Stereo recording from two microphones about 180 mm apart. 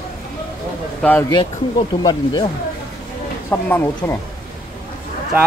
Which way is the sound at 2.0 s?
25° left (ahead or behind).